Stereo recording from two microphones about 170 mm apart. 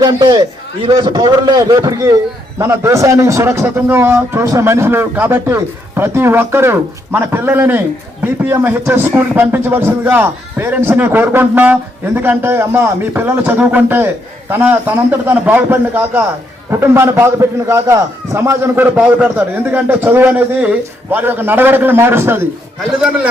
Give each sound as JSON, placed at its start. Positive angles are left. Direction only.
{"t": 0.0, "sound": "a man's voice", "side_deg": -25}